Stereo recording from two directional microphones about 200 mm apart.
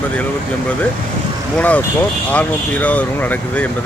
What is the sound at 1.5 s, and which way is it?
Speech, 5° left (ahead or behind).